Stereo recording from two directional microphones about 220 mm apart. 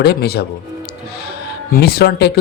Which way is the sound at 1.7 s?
45° left (ahead or behind).